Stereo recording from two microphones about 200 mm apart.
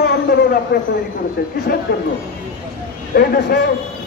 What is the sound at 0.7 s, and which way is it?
Speech, 55° left (ahead or behind).